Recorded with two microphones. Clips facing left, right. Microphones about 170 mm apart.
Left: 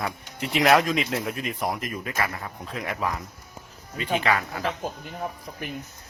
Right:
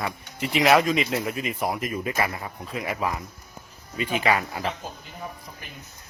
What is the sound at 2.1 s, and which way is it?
Speech, 15° right (ahead or behind).